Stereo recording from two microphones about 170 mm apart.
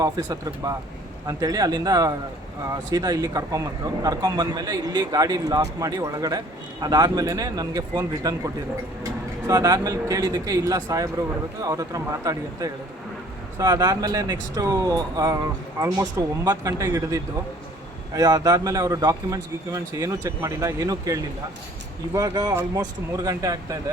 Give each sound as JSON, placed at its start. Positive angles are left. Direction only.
{"t": 0.0, "sound": "a man's voice", "side_deg": -20}